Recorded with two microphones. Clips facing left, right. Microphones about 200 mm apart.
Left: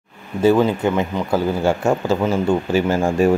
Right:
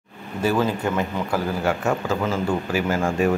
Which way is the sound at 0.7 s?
25° left (ahead or behind).